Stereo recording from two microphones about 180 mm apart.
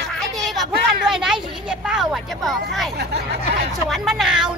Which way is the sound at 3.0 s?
65° right (ahead or behind).